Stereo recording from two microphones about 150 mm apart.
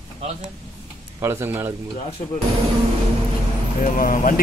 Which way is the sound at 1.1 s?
15° right (ahead or behind).